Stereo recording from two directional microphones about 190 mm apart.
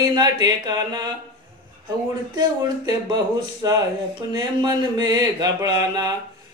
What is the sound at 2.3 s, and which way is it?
Speech, 20° right (ahead or behind).